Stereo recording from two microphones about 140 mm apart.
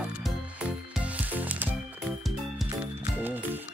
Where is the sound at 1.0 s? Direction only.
10° right (ahead or behind).